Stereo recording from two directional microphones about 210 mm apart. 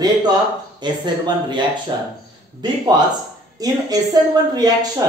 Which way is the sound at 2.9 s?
20° right (ahead or behind).